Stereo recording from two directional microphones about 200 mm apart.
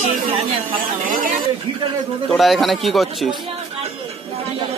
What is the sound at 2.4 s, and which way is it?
Speech, centre (ahead or behind).